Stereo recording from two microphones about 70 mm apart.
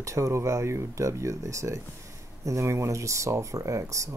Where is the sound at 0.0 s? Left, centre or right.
Right.